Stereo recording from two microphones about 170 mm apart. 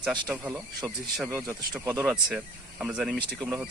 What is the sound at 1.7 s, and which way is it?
Speech, 20° right (ahead or behind).